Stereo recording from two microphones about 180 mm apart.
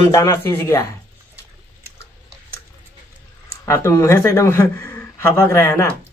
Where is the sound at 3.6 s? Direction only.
15° left (ahead or behind).